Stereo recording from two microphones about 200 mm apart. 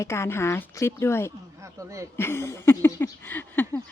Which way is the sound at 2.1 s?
10° left (ahead or behind).